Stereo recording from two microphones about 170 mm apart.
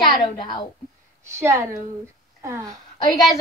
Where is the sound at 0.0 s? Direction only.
25° left (ahead or behind).